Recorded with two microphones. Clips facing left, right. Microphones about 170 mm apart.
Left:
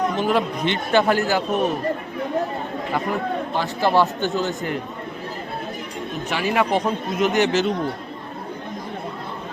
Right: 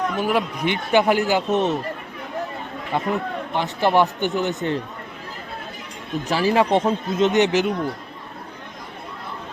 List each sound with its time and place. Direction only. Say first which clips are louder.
0.2 s a man's voice: left 1 dB; 10° right (ahead or behind)
2.9 s a man's voice: right 1 dB; 20° right (ahead or behind)
6.2 s a man's voice: right 3 dB; 35° right (ahead or behind); by 7.7 s 15° right (ahead or behind)